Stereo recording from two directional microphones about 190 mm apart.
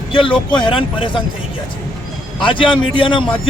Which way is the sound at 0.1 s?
25° left (ahead or behind).